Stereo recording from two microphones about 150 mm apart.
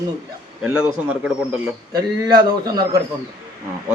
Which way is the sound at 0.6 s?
5° right (ahead or behind).